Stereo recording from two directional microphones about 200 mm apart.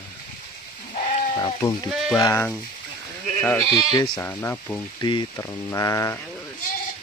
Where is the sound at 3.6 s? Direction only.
30° right (ahead or behind).